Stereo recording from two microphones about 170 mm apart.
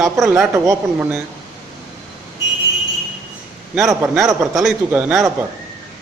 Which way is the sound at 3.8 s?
Centre (ahead or behind).